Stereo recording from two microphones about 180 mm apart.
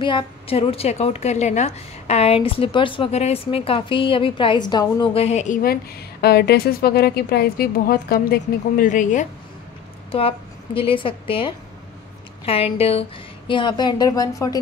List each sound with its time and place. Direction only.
0.0 s a woman's voice: 30° left (ahead or behind)
10.1 s a woman's voice: 30° left (ahead or behind)